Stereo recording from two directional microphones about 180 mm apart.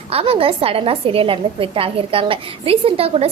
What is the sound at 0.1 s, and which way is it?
A woman's voice, 30° right (ahead or behind).